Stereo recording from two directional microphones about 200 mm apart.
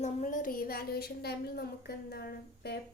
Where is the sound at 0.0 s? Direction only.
40° left (ahead or behind).